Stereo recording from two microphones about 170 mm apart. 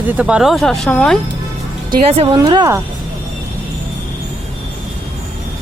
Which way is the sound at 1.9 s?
35° right (ahead or behind).